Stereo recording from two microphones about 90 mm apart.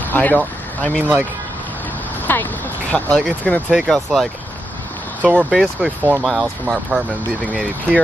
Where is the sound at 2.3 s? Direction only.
20° left (ahead or behind).